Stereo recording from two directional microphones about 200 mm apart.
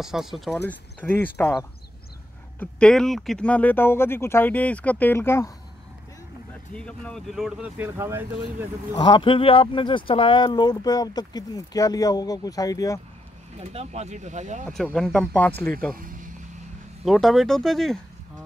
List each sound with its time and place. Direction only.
0.0 s speech: centre (ahead or behind)
1.0 s speech: 10° left (ahead or behind)
6.7 s speech: 5° left (ahead or behind)
8.9 s speech: 20° left (ahead or behind)
13.6 s speech: 35° right (ahead or behind)
14.7 s speech: centre (ahead or behind)
15.9 s speech: 45° right (ahead or behind)
17.0 s speech: centre (ahead or behind)